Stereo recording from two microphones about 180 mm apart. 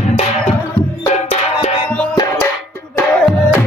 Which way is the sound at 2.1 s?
20° left (ahead or behind).